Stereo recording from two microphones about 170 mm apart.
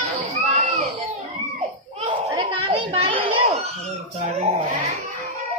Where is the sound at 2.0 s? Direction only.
30° right (ahead or behind).